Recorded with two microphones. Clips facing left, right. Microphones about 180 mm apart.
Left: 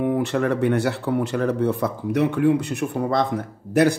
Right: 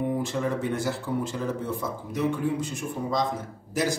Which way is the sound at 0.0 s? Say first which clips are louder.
Left 6 dB; 70° left (ahead or behind).